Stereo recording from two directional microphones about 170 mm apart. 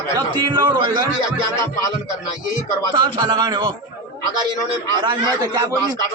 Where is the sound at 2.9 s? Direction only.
25° right (ahead or behind).